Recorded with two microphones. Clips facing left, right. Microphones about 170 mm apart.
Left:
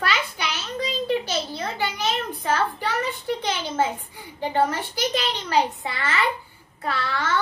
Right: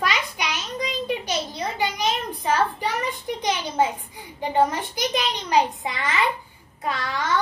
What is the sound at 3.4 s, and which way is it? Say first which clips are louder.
A child's voice: right 4 dB; 15° right (ahead or behind).